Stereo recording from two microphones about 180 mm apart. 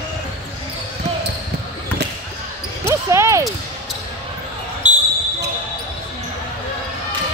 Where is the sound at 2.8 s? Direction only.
15° right (ahead or behind).